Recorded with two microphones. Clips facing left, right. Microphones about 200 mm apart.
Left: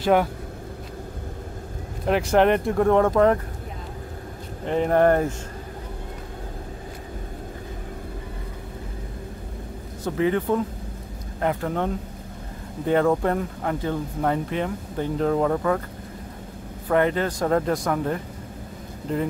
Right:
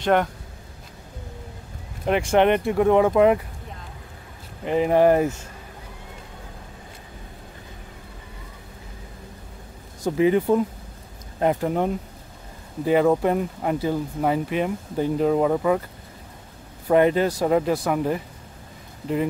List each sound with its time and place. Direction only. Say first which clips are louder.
0.0 s speech: left 1 dB; 5° left (ahead or behind)
2.0 s speech: even; centre (ahead or behind)
4.6 s speech: right 1 dB; 5° right (ahead or behind)
10.0 s speech: right 3 dB; 15° right (ahead or behind)
12.8 s speech: right 2 dB; 10° right (ahead or behind)
16.9 s speech: right 3 dB; 15° right (ahead or behind)